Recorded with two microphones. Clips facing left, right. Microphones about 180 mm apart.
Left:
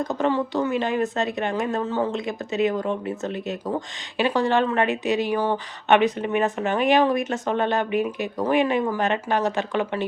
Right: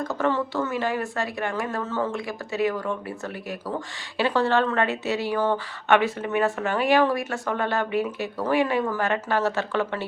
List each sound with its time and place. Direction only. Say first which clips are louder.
0.0 s a woman's voice: left 2 dB; 15° left (ahead or behind)